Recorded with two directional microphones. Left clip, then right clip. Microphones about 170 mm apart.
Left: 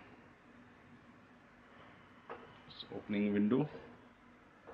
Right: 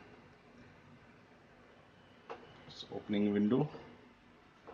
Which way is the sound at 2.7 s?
40° right (ahead or behind).